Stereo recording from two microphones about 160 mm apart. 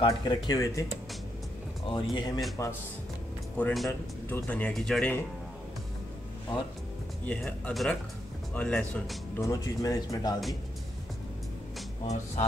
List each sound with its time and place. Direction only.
0.0 s speech: 25° left (ahead or behind)
1.9 s speech: 25° left (ahead or behind)
3.5 s speech: 5° left (ahead or behind)
7.2 s speech: 5° left (ahead or behind)
9.4 s speech: 20° left (ahead or behind)